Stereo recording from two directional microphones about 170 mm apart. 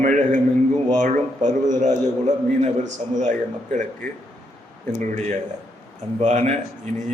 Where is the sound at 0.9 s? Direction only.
45° right (ahead or behind).